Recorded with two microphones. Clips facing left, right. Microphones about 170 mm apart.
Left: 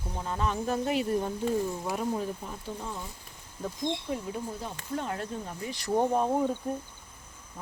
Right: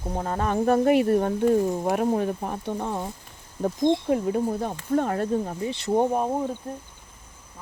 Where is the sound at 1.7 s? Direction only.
45° right (ahead or behind).